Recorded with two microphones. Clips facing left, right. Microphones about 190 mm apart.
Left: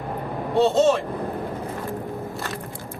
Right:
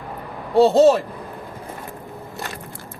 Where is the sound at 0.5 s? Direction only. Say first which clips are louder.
Right 5 dB; 35° right (ahead or behind).